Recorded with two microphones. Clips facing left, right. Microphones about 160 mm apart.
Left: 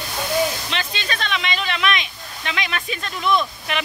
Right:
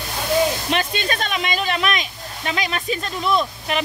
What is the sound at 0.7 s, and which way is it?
Speech, 50° right (ahead or behind).